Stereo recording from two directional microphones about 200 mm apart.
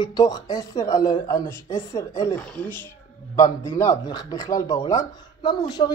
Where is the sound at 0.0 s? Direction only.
20° left (ahead or behind).